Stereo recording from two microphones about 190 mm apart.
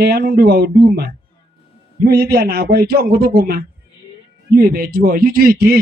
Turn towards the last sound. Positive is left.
turn(degrees=-50)  # may be behind; listen again after turning